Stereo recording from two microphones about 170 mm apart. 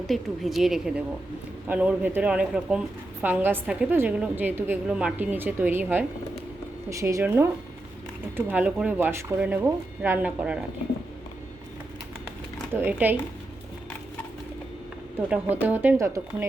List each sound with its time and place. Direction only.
0.1 s a woman's voice: centre (ahead or behind)
12.7 s a woman's voice: 10° right (ahead or behind)
15.3 s a woman's voice: 10° right (ahead or behind)